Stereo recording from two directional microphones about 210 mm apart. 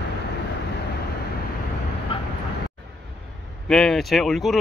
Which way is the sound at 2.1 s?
25° left (ahead or behind).